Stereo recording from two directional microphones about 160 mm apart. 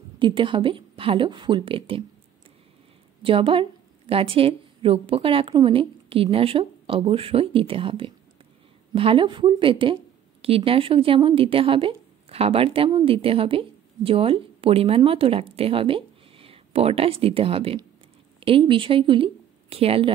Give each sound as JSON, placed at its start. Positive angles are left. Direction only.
{"t": 0.2, "sound": "a woman's voice", "side_deg": -30}
{"t": 3.2, "sound": "a woman's voice", "side_deg": -35}